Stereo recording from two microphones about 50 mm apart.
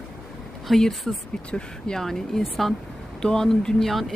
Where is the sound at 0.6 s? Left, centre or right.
Centre.